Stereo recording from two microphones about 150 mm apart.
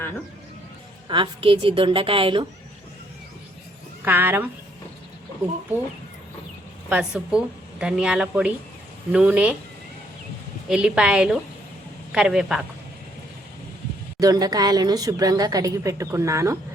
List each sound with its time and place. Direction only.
1.0 s a woman's voice: 35° right (ahead or behind)
4.0 s a woman's voice: 15° right (ahead or behind)
6.9 s a woman's voice: 5° right (ahead or behind)
10.7 s a woman's voice: 5° right (ahead or behind)
14.2 s a woman's voice: 25° right (ahead or behind)